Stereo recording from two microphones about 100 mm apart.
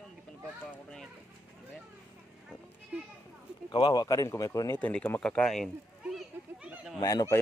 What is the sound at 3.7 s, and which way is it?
Speech, 50° left (ahead or behind).